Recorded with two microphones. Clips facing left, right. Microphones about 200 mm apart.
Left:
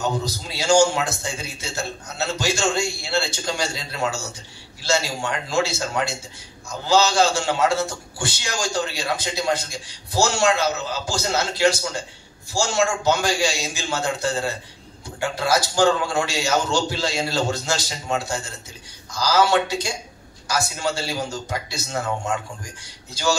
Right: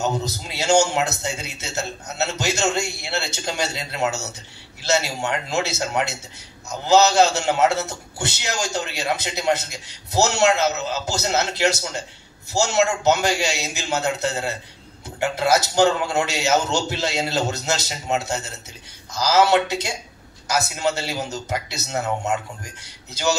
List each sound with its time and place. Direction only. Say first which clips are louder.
0.0 s a man's voice: right 1 dB; 20° right (ahead or behind)